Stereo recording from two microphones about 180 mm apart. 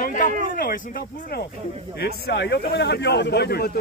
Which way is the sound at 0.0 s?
45° left (ahead or behind).